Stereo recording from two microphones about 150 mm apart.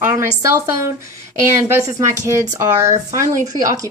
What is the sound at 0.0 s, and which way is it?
Speech, 20° right (ahead or behind).